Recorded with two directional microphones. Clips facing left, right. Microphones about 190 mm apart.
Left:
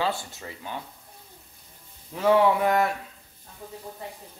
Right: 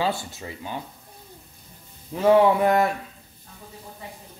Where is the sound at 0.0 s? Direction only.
15° right (ahead or behind).